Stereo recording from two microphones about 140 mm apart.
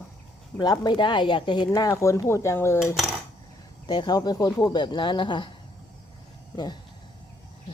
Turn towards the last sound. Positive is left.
turn(degrees=30)  # may be behind; listen again after turning